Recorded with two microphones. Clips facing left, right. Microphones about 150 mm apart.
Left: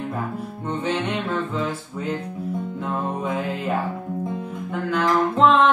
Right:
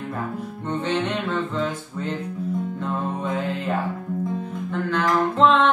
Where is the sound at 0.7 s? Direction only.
10° left (ahead or behind).